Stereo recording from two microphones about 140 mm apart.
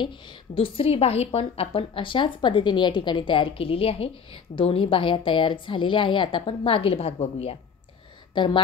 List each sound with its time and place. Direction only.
0.0 s a woman's voice: 35° left (ahead or behind)
8.4 s a woman's voice: 35° left (ahead or behind)